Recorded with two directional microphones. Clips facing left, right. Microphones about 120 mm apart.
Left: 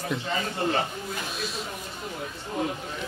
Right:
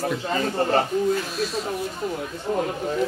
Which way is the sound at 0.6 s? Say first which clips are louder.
Right 4 dB; 40° right (ahead or behind).